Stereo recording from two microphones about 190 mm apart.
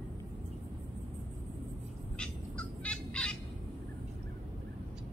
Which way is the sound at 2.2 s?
5° left (ahead or behind).